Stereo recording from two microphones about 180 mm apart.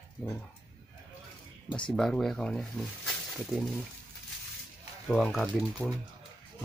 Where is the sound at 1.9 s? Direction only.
5° left (ahead or behind).